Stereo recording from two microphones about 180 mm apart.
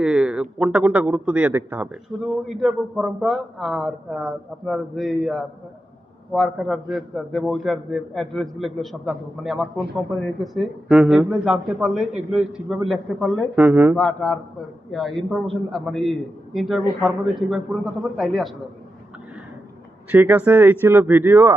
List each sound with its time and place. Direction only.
0.0 s a man's voice: 5° right (ahead or behind)
13.6 s speech: 10° right (ahead or behind)
13.9 s a man's voice: 10° left (ahead or behind)
20.1 s speech: 10° right (ahead or behind)